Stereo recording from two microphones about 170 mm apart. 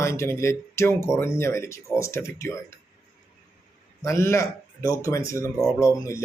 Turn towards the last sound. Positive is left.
turn(degrees=20)  # may be behind; listen again after turning